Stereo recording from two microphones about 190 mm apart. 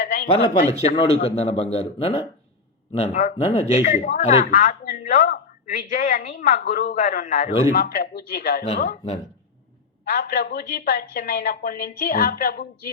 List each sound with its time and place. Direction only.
0.0 s a sound: 50° left (ahead or behind)
0.3 s a man's voice: 35° left (ahead or behind); by 8.6 s 50° left (ahead or behind)
10.0 s speech: 50° left (ahead or behind)